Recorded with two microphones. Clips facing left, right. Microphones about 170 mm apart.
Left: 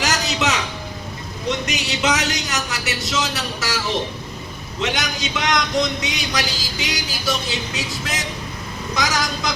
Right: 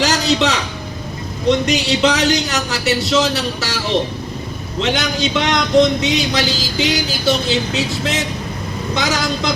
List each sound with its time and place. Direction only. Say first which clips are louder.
0.0 s a man's voice: right 6 dB; 30° right (ahead or behind)
4.8 s speech: right 6 dB; 30° right (ahead or behind)